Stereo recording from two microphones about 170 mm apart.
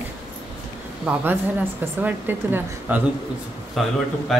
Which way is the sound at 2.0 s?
10° right (ahead or behind).